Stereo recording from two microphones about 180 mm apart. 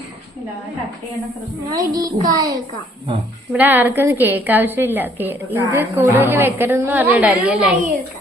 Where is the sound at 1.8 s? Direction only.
20° right (ahead or behind); by 7.7 s 5° right (ahead or behind).